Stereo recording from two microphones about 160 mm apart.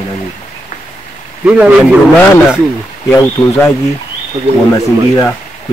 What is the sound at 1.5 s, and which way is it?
Speech, 5° right (ahead or behind).